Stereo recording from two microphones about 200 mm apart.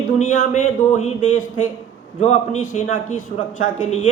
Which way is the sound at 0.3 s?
35° left (ahead or behind).